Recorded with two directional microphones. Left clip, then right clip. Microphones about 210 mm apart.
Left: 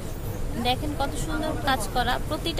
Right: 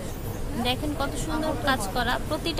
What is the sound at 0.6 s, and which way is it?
Speech, 10° right (ahead or behind).